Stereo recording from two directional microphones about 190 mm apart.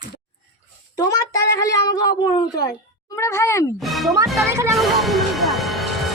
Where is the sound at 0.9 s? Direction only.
20° left (ahead or behind).